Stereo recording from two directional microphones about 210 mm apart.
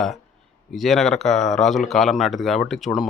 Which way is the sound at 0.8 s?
Centre (ahead or behind).